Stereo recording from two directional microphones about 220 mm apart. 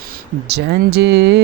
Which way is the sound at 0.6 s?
50° right (ahead or behind).